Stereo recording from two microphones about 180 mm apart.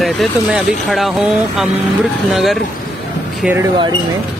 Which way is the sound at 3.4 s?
10° right (ahead or behind).